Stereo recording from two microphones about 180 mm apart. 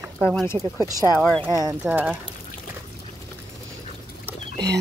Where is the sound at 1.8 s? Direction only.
10° right (ahead or behind).